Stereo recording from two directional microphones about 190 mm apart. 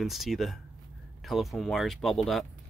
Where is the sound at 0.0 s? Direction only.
Centre (ahead or behind).